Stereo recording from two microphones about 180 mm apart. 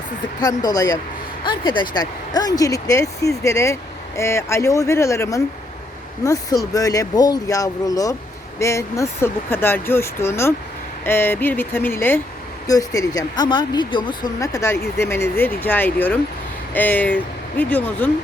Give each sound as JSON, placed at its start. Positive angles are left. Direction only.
{"t": 0.3, "sound": "speech", "side_deg": 20}